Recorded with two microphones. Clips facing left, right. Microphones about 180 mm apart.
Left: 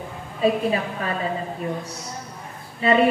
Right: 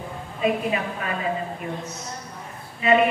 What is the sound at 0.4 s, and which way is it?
Speech, 35° left (ahead or behind).